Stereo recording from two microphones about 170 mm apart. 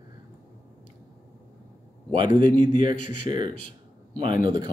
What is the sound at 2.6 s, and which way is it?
Speech, 30° right (ahead or behind).